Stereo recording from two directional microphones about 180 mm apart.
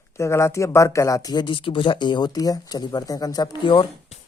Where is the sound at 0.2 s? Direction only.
15° left (ahead or behind).